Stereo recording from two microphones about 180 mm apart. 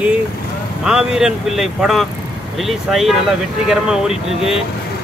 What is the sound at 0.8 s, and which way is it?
Speech, 5° right (ahead or behind).